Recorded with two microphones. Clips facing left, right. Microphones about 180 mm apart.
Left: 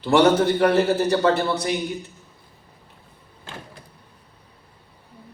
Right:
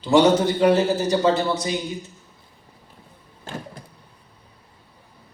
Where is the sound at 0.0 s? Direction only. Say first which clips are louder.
Even; 60° left (ahead or behind).